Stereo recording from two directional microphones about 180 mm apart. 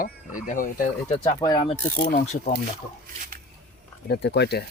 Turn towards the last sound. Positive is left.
turn(degrees=70)  # may be behind; listen again after turning